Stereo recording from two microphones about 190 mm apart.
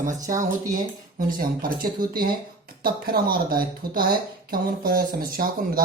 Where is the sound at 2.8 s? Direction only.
50° right (ahead or behind).